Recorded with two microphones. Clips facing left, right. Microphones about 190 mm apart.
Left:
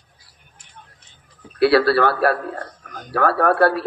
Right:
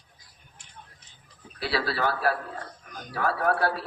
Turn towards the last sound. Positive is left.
turn(degrees=65)  # may be behind; listen again after turning